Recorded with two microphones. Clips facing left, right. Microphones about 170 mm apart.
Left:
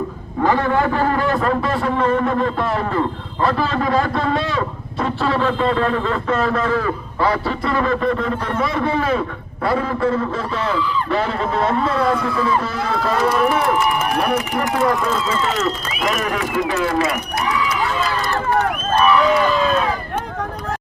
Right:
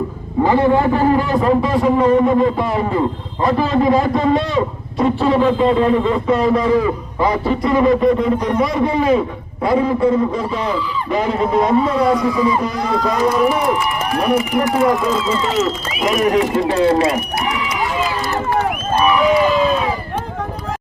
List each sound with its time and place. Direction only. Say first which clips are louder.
0.4 s a man's voice: right 3 dB; 15° right (ahead or behind)
16.0 s speech: right 7 dB; 20° right (ahead or behind)
18.9 s a sound: right 1 dB; 10° right (ahead or behind)